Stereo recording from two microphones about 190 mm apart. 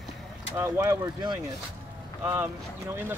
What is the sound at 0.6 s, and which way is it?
Speech, 15° right (ahead or behind).